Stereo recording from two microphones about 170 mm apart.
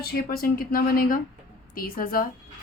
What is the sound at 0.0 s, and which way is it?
Speech, 65° left (ahead or behind).